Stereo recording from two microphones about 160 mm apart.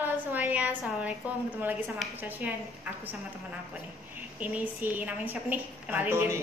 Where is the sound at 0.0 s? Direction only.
10° right (ahead or behind).